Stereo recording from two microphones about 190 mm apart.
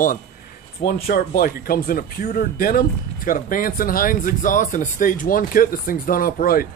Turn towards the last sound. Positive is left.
turn(degrees=50)  # may be behind; listen again after turning